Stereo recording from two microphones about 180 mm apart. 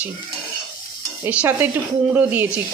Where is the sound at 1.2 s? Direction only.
10° right (ahead or behind).